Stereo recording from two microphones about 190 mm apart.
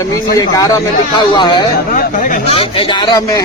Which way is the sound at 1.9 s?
40° left (ahead or behind).